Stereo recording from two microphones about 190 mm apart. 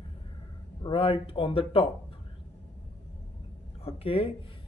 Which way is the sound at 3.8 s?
30° left (ahead or behind).